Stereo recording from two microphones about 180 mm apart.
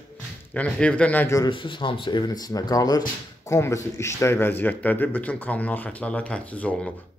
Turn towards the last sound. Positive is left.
turn(degrees=5)  # may be behind; listen again after turning